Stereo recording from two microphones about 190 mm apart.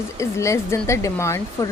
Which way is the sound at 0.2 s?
15° left (ahead or behind).